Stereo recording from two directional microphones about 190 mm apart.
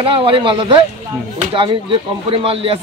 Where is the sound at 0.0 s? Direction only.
30° right (ahead or behind).